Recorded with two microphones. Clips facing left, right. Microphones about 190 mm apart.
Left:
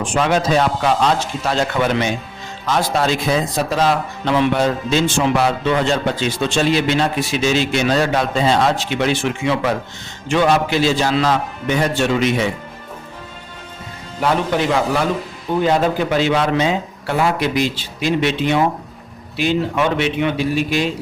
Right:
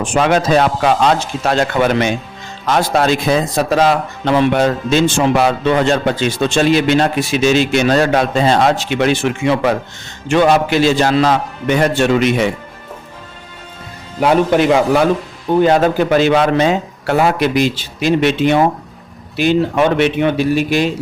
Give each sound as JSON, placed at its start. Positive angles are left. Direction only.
{"t": 0.2, "sound": "a man's voice", "side_deg": -60}
{"t": 11.1, "sound": "speech", "side_deg": -45}
{"t": 11.7, "sound": "a man's voice", "side_deg": -65}
{"t": 14.2, "sound": "a man's voice", "side_deg": -60}